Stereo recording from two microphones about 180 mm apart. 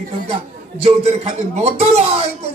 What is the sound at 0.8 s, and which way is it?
Speech, 35° right (ahead or behind).